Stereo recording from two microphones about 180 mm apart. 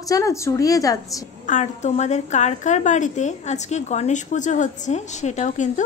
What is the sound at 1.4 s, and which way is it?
A woman's voice, 40° left (ahead or behind).